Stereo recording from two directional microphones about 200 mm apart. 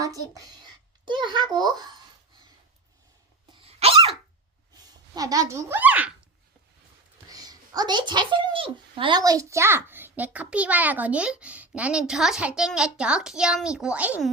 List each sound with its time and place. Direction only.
0.0 s a woman's voice: 15° right (ahead or behind)
3.6 s dog: 30° right (ahead or behind)
5.1 s speech: 15° right (ahead or behind)
7.3 s speech: 20° right (ahead or behind)